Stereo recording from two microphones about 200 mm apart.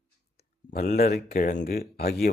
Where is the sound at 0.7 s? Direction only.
50° left (ahead or behind).